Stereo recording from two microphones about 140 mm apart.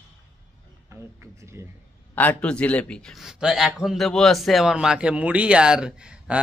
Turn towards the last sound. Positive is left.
turn(degrees=-5)  # may be behind; listen again after turning